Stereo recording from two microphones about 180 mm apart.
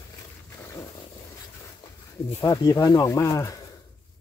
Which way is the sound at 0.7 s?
20° left (ahead or behind).